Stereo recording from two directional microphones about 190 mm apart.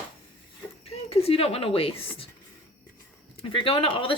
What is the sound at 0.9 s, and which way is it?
Speech, 30° left (ahead or behind).